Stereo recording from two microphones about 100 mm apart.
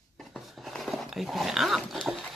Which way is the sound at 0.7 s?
Centre (ahead or behind).